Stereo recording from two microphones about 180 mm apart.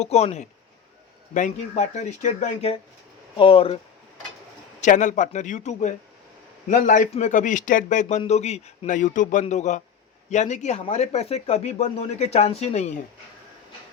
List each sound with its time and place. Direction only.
0.0 s speech: 35° left (ahead or behind)
4.8 s a man's voice: 45° left (ahead or behind)